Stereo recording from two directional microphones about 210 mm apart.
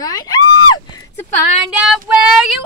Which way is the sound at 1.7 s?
5° right (ahead or behind).